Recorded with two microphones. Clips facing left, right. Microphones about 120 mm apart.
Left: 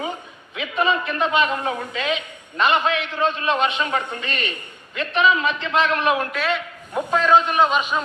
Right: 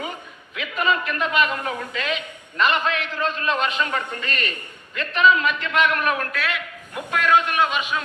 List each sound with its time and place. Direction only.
0.5 s a man's voice: 30° left (ahead or behind)
4.2 s a man's voice: 40° right (ahead or behind)
4.9 s a man's voice: 30° left (ahead or behind)